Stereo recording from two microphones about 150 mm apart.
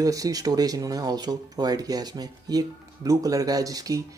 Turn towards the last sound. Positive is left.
turn(degrees=-25)  # may be behind; listen again after turning